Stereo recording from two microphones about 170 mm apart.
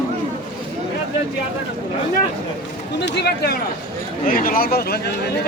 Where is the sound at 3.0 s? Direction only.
80° left.